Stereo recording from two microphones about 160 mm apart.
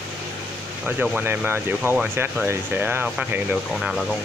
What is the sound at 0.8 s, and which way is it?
Speech, 5° right (ahead or behind).